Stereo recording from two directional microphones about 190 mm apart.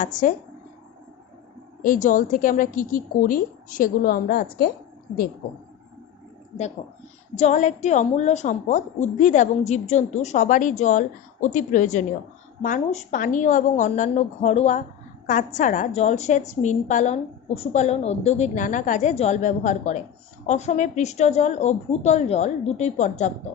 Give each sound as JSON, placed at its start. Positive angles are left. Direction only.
{"t": 0.0, "sound": "a woman's voice", "side_deg": 45}
{"t": 1.8, "sound": "a woman's voice", "side_deg": 45}
{"t": 7.3, "sound": "a woman's voice", "side_deg": 40}